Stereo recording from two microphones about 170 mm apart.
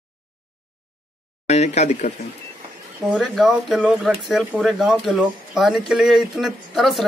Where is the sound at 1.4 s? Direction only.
40° left (ahead or behind).